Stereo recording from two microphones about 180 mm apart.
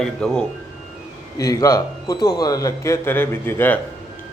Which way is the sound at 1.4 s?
20° left (ahead or behind).